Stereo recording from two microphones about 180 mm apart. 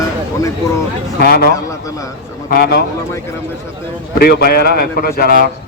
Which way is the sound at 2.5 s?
65° left (ahead or behind).